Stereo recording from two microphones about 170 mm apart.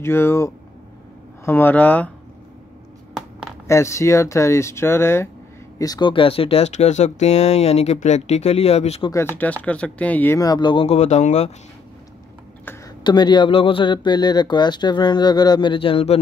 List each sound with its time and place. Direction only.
0.0 s speech: 15° left (ahead or behind)
3.2 s a sound: centre (ahead or behind)
3.6 s speech: 15° left (ahead or behind); by 9.1 s 40° left (ahead or behind)
9.1 s speech: 15° left (ahead or behind); by 11.5 s 40° left (ahead or behind)
13.0 s speech: 25° left (ahead or behind)